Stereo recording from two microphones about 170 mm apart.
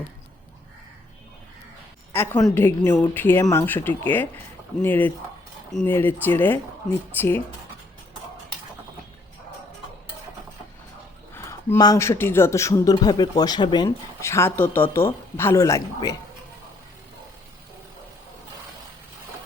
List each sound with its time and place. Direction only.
2.1 s a woman's voice: 15° left (ahead or behind)
11.3 s speech: 15° left (ahead or behind)